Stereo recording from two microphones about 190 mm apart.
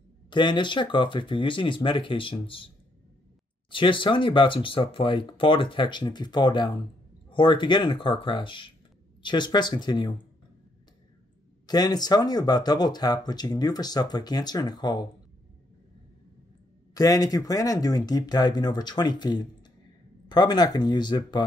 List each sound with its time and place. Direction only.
0.3 s speech: 25° left (ahead or behind)
3.7 s speech: 25° left (ahead or behind)
11.6 s speech: 20° left (ahead or behind)
16.9 s speech: 20° left (ahead or behind)